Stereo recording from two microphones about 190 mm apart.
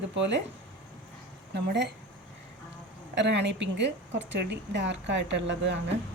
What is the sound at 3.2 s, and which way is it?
A woman's voice, 65° right (ahead or behind).